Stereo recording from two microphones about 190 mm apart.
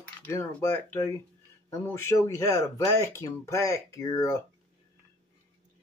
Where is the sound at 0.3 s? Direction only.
15° left (ahead or behind).